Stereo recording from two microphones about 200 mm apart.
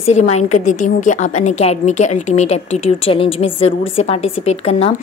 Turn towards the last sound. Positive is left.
turn(degrees=30)  # may be behind; listen again after turning